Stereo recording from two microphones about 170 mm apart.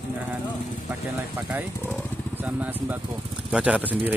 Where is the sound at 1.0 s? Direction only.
10° right (ahead or behind).